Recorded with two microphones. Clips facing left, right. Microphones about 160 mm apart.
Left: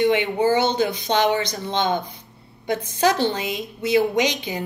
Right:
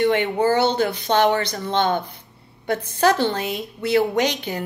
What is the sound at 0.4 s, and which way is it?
Speech, 10° left (ahead or behind).